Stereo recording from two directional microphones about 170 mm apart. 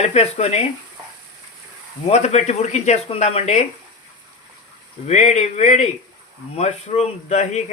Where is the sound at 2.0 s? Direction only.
40° left (ahead or behind).